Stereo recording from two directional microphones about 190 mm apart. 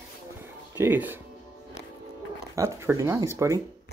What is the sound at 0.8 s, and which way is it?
Speech, 10° right (ahead or behind).